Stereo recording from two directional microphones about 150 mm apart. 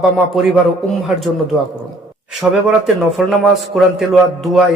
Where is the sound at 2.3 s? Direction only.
Centre (ahead or behind).